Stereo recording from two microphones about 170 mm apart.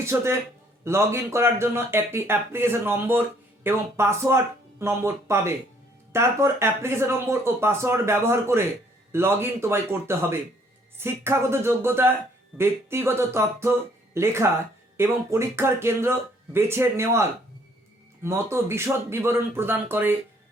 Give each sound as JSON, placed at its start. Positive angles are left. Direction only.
{"t": 0.0, "sound": "speech", "side_deg": -15}